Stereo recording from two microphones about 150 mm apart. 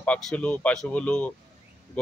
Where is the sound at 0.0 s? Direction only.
5° left (ahead or behind).